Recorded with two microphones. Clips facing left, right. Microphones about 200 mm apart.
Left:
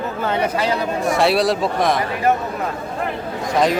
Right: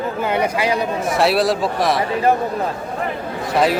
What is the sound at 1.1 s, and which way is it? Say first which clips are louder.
Speech: even; centre (ahead or behind).